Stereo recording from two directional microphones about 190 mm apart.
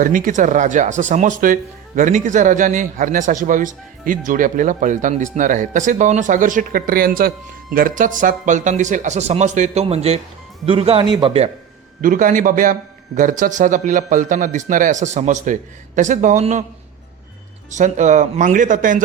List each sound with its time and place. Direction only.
0.0 s a man's voice: 45° right (ahead or behind); by 11.5 s 30° right (ahead or behind)
12.0 s a man's voice: 45° right (ahead or behind)
17.7 s a man's voice: 40° right (ahead or behind)